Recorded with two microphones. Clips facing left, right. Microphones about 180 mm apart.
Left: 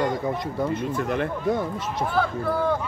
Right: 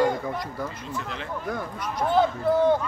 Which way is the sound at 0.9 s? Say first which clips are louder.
Left 9 dB; 55° left (ahead or behind).